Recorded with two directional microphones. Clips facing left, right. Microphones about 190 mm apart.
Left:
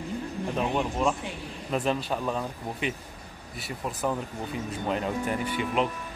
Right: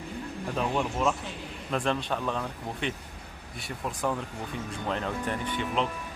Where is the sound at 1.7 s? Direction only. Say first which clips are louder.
Left 1 dB; 5° left (ahead or behind).